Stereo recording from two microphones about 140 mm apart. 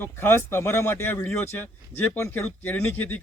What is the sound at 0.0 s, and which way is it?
Speech, 15° left (ahead or behind).